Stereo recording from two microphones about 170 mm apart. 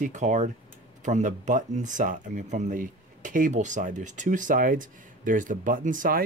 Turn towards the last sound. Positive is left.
turn(degrees=-50)  # may be behind; listen again after turning